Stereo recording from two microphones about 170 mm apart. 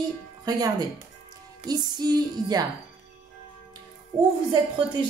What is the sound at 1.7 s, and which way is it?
Speech, 25° right (ahead or behind).